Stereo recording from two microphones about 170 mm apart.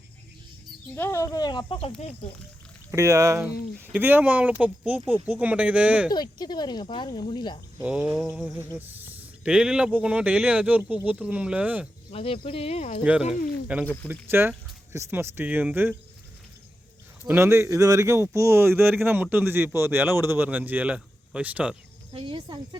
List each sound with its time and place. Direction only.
0.9 s speech: 15° left (ahead or behind); by 2.1 s 35° left (ahead or behind)
2.9 s a man's voice: 15° right (ahead or behind)
6.1 s speech: 25° left (ahead or behind)
7.8 s a man's voice: 5° right (ahead or behind)
8.5 s a man's voice: 10° right (ahead or behind)
12.1 s speech: 35° left (ahead or behind)
13.0 s a man's voice: 10° right (ahead or behind)
13.8 s speech: 10° left (ahead or behind)
14.1 s a man's voice: 15° right (ahead or behind)
17.2 s a man's voice: 15° right (ahead or behind)
22.1 s speech: 30° right (ahead or behind)